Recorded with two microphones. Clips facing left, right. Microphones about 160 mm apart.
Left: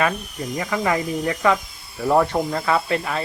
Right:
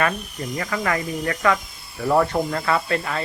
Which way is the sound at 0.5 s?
15° left (ahead or behind).